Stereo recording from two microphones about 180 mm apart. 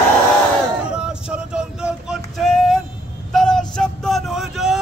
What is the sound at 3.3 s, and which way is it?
Vehicle, centre (ahead or behind).